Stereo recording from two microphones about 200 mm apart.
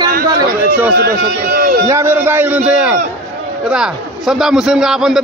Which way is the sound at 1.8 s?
15° right (ahead or behind).